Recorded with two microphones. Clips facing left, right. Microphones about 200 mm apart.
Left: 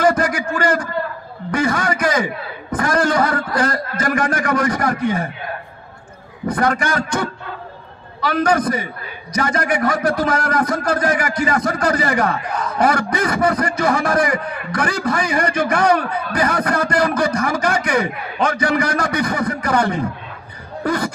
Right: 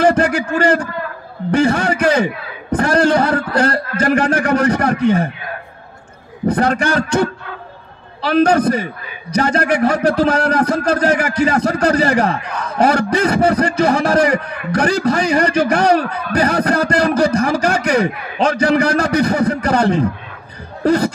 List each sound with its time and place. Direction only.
0.0 s a man's voice: 30° right (ahead or behind)
6.5 s a man's voice: 30° right (ahead or behind)